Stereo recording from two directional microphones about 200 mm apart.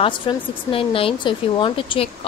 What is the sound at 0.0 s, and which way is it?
Speech, 25° left (ahead or behind).